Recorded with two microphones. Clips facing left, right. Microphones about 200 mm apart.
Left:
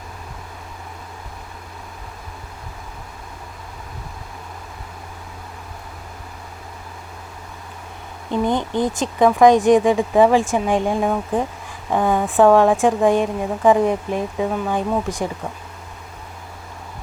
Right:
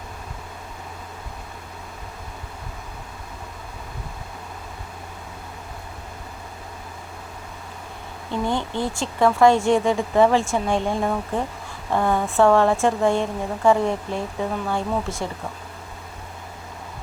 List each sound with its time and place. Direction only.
8.3 s speech: 15° left (ahead or behind)